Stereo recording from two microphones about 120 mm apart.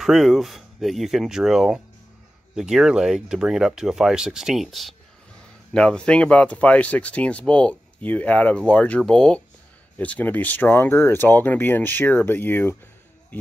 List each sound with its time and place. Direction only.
0.0 s speech: centre (ahead or behind); by 12.7 s 15° left (ahead or behind)